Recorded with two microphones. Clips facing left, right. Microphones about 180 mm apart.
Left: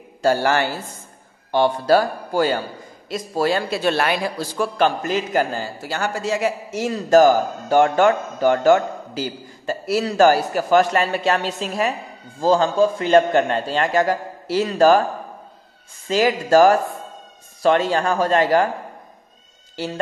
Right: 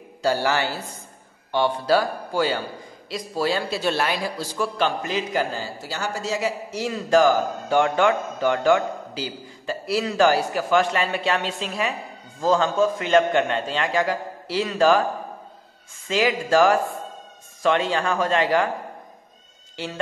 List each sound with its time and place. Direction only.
0.2 s a man's voice: 50° left (ahead or behind)
16.1 s a man's voice: 40° left (ahead or behind)
19.8 s a man's voice: 40° left (ahead or behind)